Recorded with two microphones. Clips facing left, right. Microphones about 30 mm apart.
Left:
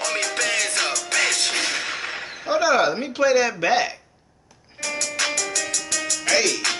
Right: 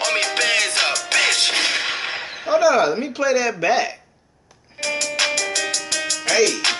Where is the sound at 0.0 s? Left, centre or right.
Right.